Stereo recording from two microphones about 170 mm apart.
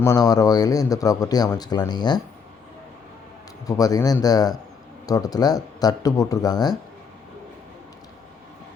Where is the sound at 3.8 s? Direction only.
20° left (ahead or behind).